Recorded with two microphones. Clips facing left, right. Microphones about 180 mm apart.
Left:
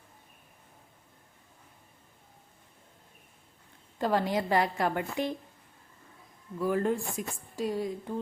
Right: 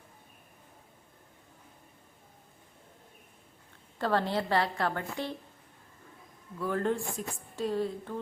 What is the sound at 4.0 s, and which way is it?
Speech, 15° left (ahead or behind).